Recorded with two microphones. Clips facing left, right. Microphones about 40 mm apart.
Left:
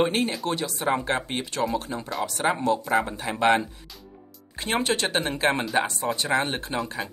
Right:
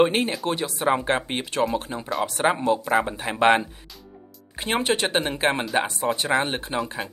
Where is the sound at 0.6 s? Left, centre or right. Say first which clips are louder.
Right 3 dB; centre.